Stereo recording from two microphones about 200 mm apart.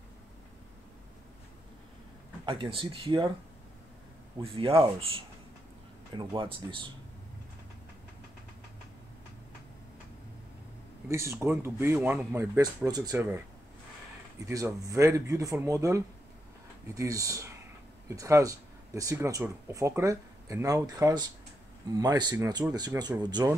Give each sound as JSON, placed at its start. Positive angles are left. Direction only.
{"t": 2.4, "sound": "speech", "side_deg": -25}
{"t": 4.4, "sound": "speech", "side_deg": -30}
{"t": 11.1, "sound": "speech", "side_deg": -15}
{"t": 14.4, "sound": "speech", "side_deg": -15}